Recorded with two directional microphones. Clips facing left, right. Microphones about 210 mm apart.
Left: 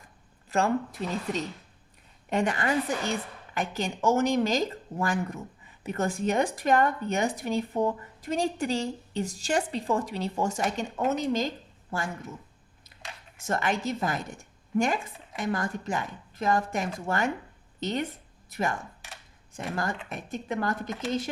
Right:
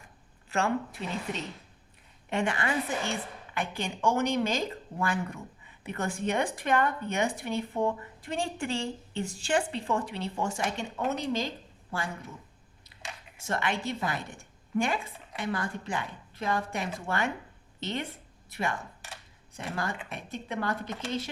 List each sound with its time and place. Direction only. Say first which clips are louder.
0.5 s speech: left 3 dB; 40° left (ahead or behind)
13.4 s a woman's voice: left 3 dB; 45° left (ahead or behind)
15.4 s a woman's voice: left 3 dB; 45° left (ahead or behind)